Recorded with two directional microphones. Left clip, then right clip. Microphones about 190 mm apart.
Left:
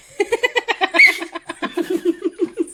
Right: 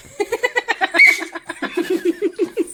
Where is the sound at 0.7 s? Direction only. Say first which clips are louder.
Right 1 dB; 35° left (ahead or behind).